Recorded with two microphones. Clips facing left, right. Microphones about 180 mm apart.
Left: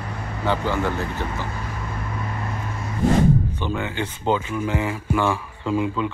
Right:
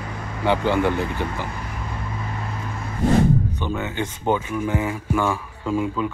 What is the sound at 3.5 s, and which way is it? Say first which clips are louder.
A man's voice: even; 10° right (ahead or behind).